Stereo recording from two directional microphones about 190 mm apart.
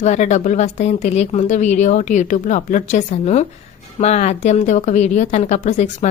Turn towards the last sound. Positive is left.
turn(degrees=40)  # may be behind; listen again after turning